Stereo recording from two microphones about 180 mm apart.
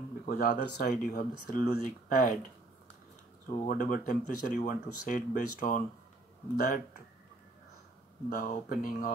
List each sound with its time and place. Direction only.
0.2 s speech: 50° left (ahead or behind)
3.4 s speech: 50° left (ahead or behind)
8.3 s speech: 50° left (ahead or behind)